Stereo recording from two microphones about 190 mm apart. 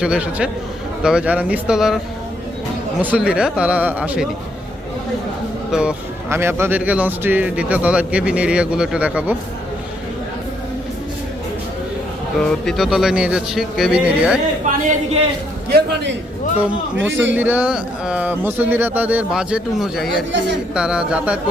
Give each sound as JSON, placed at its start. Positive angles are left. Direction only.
{"t": 0.0, "sound": "speech", "side_deg": -5}
{"t": 3.0, "sound": "speech", "side_deg": -5}
{"t": 5.7, "sound": "speech", "side_deg": -5}
{"t": 12.5, "sound": "speech", "side_deg": 0}
{"t": 14.7, "sound": "speech", "side_deg": -40}
{"t": 16.6, "sound": "speech", "side_deg": -10}